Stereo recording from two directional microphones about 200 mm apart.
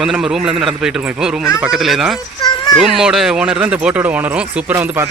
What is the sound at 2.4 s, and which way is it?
Children playing, 20° left (ahead or behind).